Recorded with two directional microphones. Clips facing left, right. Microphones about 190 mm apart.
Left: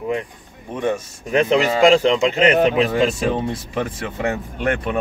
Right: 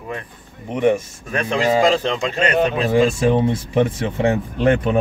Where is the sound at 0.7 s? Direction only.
20° right (ahead or behind).